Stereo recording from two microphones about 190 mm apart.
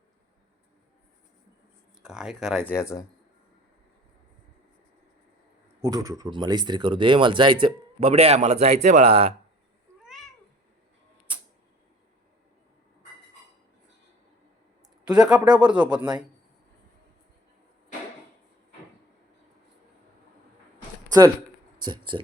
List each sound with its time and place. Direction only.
2.0 s speech: 5° right (ahead or behind)
2.7 s speech: 15° left (ahead or behind)
5.8 s speech: 15° right (ahead or behind)
10.0 s cat: centre (ahead or behind)
15.0 s speech: 5° right (ahead or behind)
21.8 s speech: 25° right (ahead or behind)